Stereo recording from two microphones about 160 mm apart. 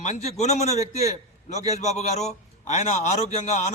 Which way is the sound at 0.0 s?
45° left (ahead or behind).